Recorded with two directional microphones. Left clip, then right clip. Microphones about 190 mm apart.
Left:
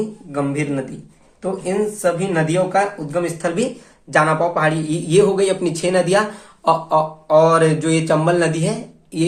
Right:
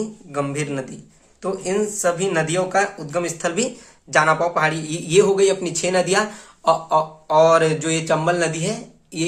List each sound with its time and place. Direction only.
0.3 s a man's voice: 25° right (ahead or behind)